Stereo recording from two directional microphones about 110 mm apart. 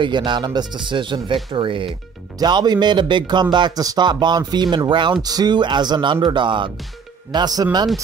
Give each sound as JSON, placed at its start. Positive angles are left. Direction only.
{"t": 0.0, "sound": "speech", "side_deg": -45}
{"t": 2.3, "sound": "speech", "side_deg": -40}